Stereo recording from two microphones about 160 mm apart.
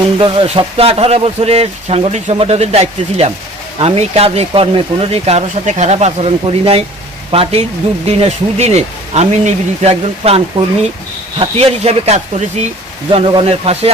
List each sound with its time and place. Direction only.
0.2 s speech: 35° right (ahead or behind)